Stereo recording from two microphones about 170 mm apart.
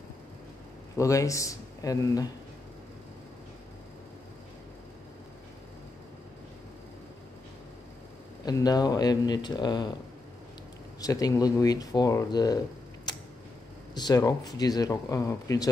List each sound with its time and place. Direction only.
0.9 s speech: 20° left (ahead or behind)
8.5 s speech: 20° left (ahead or behind)
11.0 s speech: 20° left (ahead or behind)
13.9 s speech: 25° left (ahead or behind)